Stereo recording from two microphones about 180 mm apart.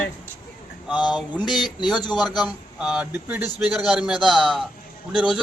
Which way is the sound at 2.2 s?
25° left (ahead or behind).